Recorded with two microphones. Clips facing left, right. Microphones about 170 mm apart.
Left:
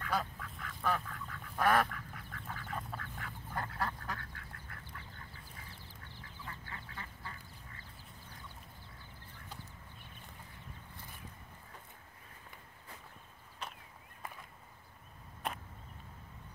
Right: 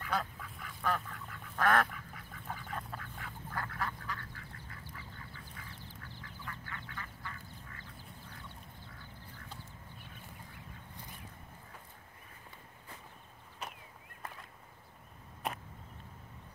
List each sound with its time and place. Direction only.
0.0 s duck: centre (ahead or behind)
3.5 s duck: 20° left (ahead or behind)
4.0 s duck: 50° left (ahead or behind)
6.4 s duck: 30° left (ahead or behind)